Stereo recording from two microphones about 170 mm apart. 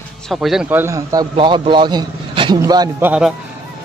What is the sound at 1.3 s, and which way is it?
A man's voice, 30° right (ahead or behind).